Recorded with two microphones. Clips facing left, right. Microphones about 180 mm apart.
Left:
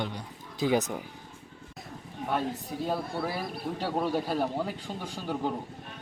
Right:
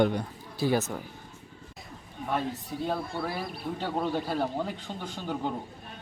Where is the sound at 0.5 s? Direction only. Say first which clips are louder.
Even; 15° left (ahead or behind).